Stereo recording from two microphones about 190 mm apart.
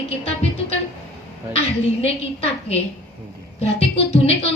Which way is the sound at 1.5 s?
35° left (ahead or behind).